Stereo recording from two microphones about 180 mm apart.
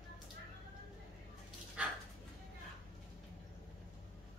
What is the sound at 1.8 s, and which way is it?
Dog, 5° right (ahead or behind).